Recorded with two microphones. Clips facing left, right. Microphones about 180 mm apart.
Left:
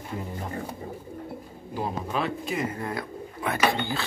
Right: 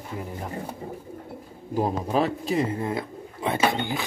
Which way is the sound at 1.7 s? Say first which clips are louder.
Right 6 dB; 40° right (ahead or behind).